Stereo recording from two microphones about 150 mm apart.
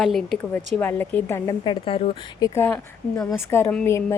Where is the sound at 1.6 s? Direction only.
35° left (ahead or behind).